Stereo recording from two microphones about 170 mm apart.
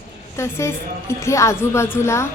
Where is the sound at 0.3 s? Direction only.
15° left (ahead or behind).